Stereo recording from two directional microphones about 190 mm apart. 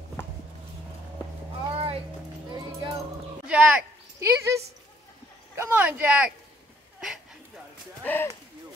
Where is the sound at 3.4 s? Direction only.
5° right (ahead or behind).